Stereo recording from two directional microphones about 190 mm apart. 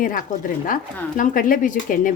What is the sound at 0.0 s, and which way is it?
Speech, 45° left (ahead or behind).